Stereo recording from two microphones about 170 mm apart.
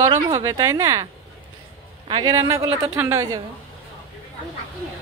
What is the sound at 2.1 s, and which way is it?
A woman's voice, 25° right (ahead or behind).